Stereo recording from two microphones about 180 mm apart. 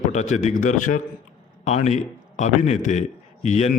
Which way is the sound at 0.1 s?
40° left (ahead or behind).